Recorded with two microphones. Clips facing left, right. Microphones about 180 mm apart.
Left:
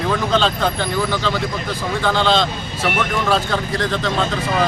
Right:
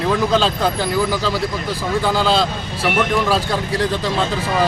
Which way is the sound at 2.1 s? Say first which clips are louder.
Left 1 dB; 10° right (ahead or behind).